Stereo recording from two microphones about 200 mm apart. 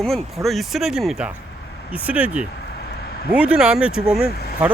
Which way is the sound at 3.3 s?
5° right (ahead or behind).